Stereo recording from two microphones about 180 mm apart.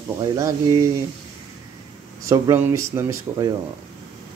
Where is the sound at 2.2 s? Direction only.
15° right (ahead or behind).